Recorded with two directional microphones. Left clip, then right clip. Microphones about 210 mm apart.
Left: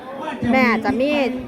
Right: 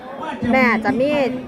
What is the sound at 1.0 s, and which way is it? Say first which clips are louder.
Speech: right 1 dB; 40° left (ahead or behind).